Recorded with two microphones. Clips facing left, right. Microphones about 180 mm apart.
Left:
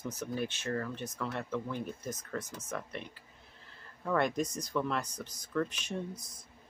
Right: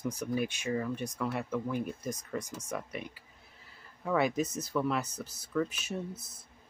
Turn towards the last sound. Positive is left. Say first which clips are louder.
# even
turn(degrees=-5)  # may be behind; listen again after turning